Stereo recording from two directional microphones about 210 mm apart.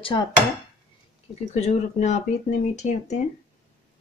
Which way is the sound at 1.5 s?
35° left (ahead or behind).